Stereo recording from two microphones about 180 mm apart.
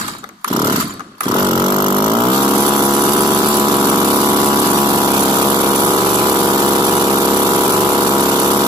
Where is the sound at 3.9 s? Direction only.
10° right (ahead or behind).